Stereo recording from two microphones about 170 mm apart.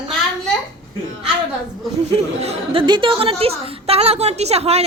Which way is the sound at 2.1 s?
35° right (ahead or behind).